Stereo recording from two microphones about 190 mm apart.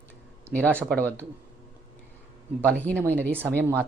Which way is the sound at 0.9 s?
10° left (ahead or behind).